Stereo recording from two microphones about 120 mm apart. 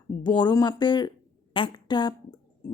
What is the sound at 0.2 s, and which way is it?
A woman's voice, 40° left (ahead or behind).